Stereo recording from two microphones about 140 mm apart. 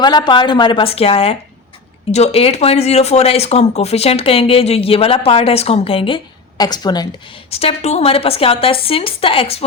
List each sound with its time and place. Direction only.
0.0 s a woman's voice: 30° left (ahead or behind)
6.6 s a woman's voice: 30° left (ahead or behind)
7.5 s speech: 45° left (ahead or behind)